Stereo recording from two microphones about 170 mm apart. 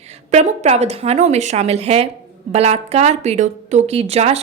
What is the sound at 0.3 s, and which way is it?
A woman's voice, 40° right (ahead or behind).